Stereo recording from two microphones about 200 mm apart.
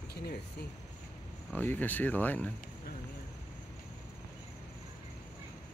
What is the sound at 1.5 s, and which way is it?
Speech, 10° left (ahead or behind).